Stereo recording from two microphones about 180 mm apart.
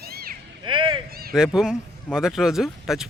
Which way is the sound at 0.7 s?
25° right (ahead or behind).